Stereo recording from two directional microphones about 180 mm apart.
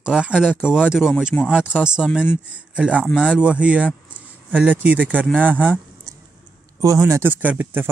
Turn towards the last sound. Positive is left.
turn(degrees=-10)  # may be behind; listen again after turning